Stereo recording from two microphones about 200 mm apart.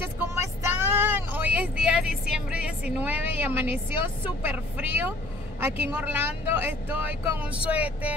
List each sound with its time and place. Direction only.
0.8 s vehicle: 10° right (ahead or behind)
5.6 s speech: 10° right (ahead or behind)